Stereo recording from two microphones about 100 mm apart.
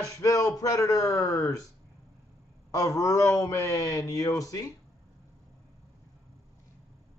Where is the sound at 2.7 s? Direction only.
35° left (ahead or behind).